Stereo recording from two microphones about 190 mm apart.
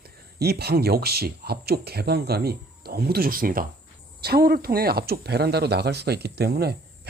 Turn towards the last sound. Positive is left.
turn(degrees=-55)  # may be behind; listen again after turning